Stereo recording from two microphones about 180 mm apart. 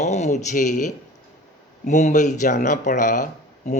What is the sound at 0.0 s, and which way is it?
Speech, 40° left (ahead or behind).